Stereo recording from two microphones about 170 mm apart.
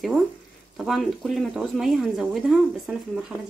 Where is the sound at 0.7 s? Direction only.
Centre (ahead or behind).